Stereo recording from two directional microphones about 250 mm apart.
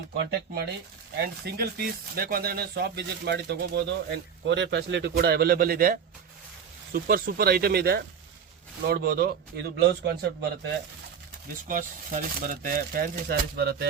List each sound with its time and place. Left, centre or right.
0.2 s speech: right
11.7 s speech: right